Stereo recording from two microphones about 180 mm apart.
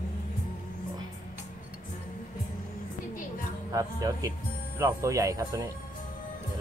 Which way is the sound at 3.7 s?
20° right (ahead or behind).